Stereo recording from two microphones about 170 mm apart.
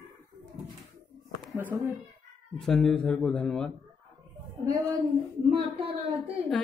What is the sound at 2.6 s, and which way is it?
Speech, centre (ahead or behind).